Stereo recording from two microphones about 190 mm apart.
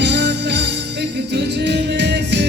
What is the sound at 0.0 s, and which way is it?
Music, 65° right (ahead or behind).